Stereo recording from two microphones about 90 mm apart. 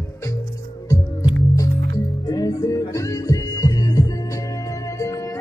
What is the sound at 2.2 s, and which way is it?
Music, 45° left (ahead or behind).